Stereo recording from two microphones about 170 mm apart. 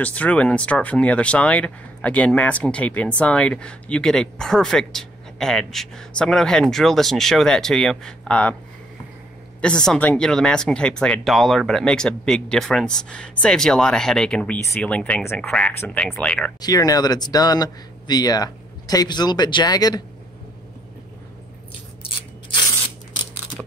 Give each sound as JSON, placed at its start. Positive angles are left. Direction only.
{"t": 0.0, "sound": "speech", "side_deg": 10}
{"t": 9.6, "sound": "speech", "side_deg": 5}
{"t": 16.6, "sound": "speech", "side_deg": 20}